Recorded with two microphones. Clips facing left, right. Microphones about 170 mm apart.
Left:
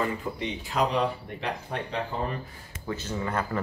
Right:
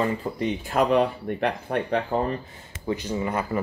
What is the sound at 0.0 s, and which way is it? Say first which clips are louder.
Speech: right 4 dB; 45° right (ahead or behind).